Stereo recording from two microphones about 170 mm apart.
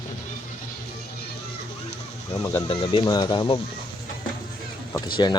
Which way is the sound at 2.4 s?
15° left (ahead or behind).